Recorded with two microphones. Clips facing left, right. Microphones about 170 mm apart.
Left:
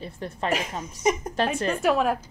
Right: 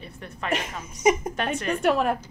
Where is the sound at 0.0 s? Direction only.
30° left (ahead or behind).